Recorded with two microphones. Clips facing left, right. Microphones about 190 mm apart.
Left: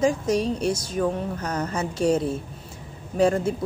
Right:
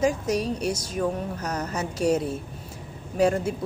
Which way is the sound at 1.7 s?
30° left (ahead or behind).